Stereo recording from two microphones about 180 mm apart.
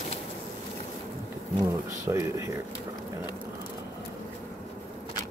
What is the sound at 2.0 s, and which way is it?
Speech, 15° right (ahead or behind).